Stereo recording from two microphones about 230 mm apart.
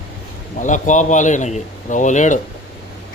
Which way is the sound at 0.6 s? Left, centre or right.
Left.